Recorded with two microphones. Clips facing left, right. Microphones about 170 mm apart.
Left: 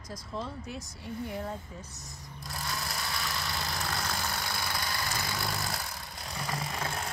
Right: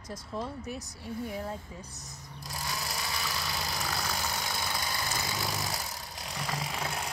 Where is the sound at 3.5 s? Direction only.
5° right (ahead or behind).